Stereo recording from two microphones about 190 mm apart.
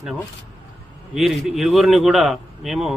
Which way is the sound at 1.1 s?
Centre (ahead or behind).